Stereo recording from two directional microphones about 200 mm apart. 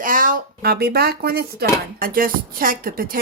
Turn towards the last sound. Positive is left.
turn(degrees=-45)  # may be behind; listen again after turning